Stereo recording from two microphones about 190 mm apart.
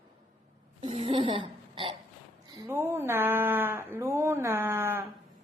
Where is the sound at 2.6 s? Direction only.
15° right (ahead or behind).